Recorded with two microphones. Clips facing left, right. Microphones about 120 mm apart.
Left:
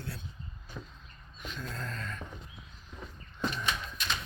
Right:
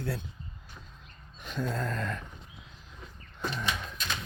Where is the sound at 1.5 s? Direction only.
40° right (ahead or behind).